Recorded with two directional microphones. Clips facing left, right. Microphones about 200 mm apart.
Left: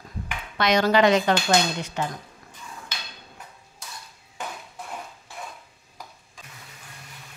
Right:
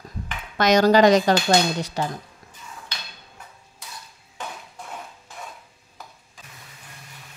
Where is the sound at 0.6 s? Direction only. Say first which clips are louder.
Right 4 dB; 40° right (ahead or behind).